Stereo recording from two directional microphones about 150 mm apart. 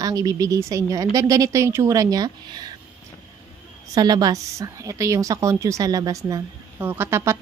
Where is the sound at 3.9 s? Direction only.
25° right (ahead or behind).